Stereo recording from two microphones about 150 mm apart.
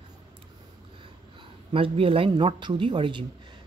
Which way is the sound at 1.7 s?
35° right (ahead or behind).